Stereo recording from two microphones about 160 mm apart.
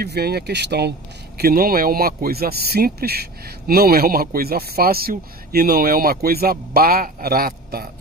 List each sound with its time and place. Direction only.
0.0 s speech: 85° right
1.4 s speech: 65° right (ahead or behind)